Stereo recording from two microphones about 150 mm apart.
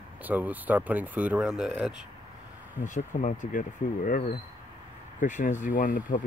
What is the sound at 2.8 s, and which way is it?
Speech, 55° left (ahead or behind).